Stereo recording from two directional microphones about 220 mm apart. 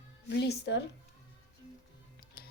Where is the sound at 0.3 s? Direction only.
50° left (ahead or behind).